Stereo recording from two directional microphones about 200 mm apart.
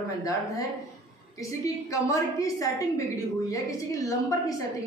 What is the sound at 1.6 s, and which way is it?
A woman's voice, 15° left (ahead or behind).